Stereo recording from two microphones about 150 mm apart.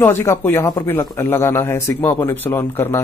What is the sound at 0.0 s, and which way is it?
Speech, 15° left (ahead or behind).